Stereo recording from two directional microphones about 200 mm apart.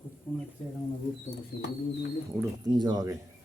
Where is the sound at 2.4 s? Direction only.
20° right (ahead or behind).